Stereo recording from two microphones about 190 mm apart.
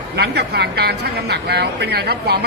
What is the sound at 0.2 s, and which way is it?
A woman's voice, 60° right (ahead or behind).